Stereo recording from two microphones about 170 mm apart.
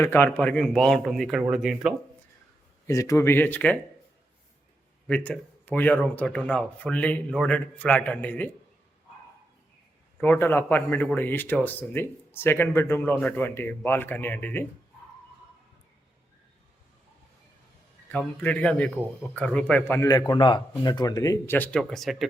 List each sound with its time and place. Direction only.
0.0 s a man's voice: 15° left (ahead or behind); by 1.9 s 5° right (ahead or behind)
2.8 s speech: 20° left (ahead or behind)
5.0 s speech: 5° left (ahead or behind)
10.2 s speech: 10° left (ahead or behind)
18.1 s speech: 10° left (ahead or behind)